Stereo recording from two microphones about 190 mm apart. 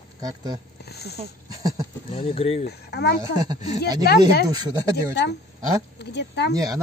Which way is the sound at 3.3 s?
20° right (ahead or behind).